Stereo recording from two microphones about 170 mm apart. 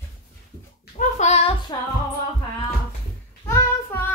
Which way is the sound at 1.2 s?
40° left (ahead or behind).